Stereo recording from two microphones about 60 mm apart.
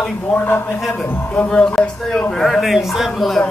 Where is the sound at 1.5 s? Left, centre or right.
Centre.